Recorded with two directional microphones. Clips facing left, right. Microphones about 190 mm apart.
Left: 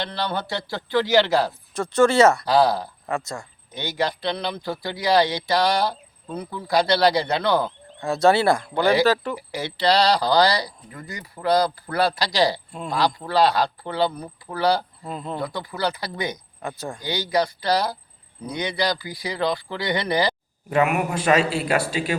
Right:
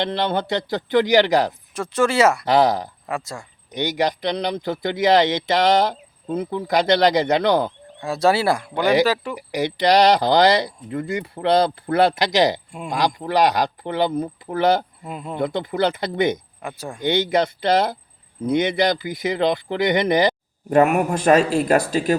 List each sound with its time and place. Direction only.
0.0 s speech: 20° right (ahead or behind)
15.0 s speech: 10° right (ahead or behind)
15.4 s speech: 25° right (ahead or behind)
16.6 s speech: 10° right (ahead or behind)
17.0 s speech: 25° right (ahead or behind)
20.7 s speech: 45° right (ahead or behind)